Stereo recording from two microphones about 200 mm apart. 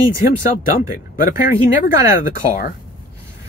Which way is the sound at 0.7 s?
45° left (ahead or behind).